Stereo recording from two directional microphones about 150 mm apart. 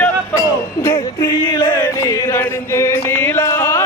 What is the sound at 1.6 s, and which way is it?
Music, 35° left (ahead or behind).